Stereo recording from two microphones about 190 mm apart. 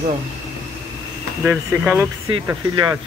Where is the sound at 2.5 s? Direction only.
20° right (ahead or behind).